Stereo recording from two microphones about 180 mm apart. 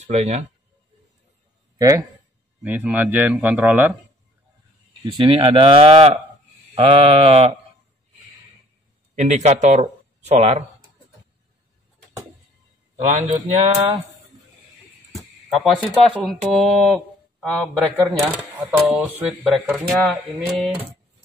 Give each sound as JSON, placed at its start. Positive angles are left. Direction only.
{"t": 0.0, "sound": "speech", "side_deg": -40}
{"t": 1.8, "sound": "a man's voice", "side_deg": -20}
{"t": 5.0, "sound": "speech", "side_deg": -25}
{"t": 9.1, "sound": "speech", "side_deg": -40}
{"t": 13.0, "sound": "speech", "side_deg": -40}
{"t": 15.7, "sound": "speech", "side_deg": 0}
{"t": 18.1, "sound": "speech", "side_deg": -15}